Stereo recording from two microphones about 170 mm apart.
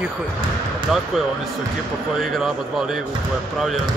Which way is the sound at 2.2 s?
Centre (ahead or behind).